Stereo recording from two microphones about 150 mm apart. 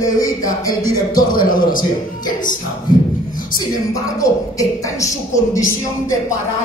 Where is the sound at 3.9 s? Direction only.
25° left (ahead or behind).